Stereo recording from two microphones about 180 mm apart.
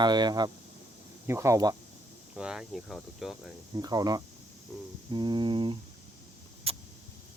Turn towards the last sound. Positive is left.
turn(degrees=-30)  # may be behind; listen again after turning